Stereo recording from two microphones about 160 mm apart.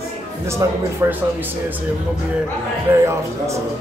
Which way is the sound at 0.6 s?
20° right (ahead or behind).